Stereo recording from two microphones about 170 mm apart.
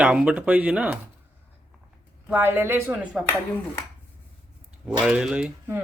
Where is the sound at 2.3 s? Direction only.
15° right (ahead or behind).